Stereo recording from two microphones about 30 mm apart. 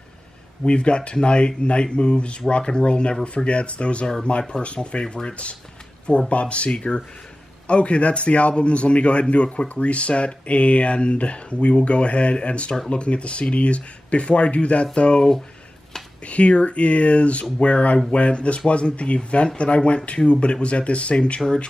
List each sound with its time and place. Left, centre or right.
0.7 s speech: left
16.3 s speech: left
21.4 s speech: centre